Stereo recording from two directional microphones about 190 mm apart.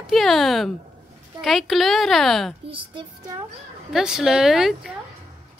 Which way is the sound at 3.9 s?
Centre (ahead or behind).